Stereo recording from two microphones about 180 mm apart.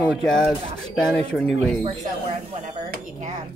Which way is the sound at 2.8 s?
40° right (ahead or behind).